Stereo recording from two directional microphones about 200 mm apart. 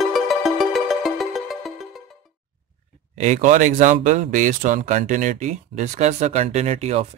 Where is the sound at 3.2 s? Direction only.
40° right (ahead or behind).